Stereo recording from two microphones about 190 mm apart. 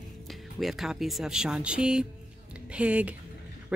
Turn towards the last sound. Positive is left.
turn(degrees=-5)  # may be behind; listen again after turning